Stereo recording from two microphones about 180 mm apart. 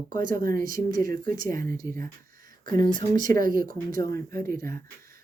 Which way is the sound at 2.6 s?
25° left (ahead or behind).